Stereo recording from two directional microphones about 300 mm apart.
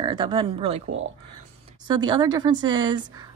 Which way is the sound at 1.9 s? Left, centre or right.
Centre.